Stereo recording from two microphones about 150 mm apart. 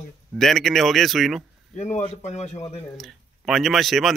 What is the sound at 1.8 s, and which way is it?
Speech, 50° left (ahead or behind).